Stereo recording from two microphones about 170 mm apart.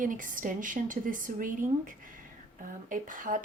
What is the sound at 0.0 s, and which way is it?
Speech, 50° right (ahead or behind).